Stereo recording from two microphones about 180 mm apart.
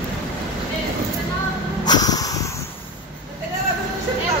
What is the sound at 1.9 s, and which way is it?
Vehicle, 20° left (ahead or behind).